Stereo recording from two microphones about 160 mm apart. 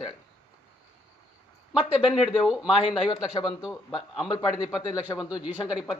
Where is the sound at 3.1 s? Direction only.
25° left (ahead or behind).